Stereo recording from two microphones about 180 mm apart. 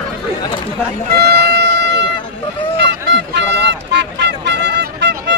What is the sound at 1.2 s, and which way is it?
Music, 65° right (ahead or behind).